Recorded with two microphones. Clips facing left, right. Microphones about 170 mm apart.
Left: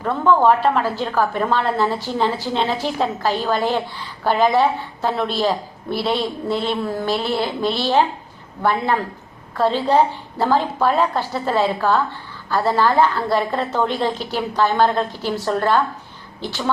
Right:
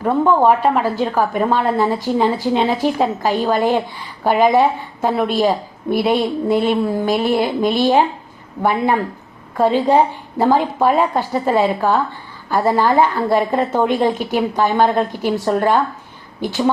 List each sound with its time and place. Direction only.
0.0 s a woman's voice: 15° right (ahead or behind)